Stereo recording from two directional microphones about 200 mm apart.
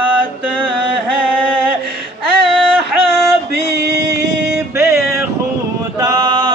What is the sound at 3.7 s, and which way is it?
Music, 55° right (ahead or behind).